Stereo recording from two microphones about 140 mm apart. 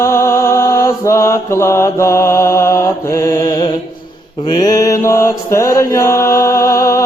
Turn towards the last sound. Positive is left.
turn(degrees=20)  # may be behind; listen again after turning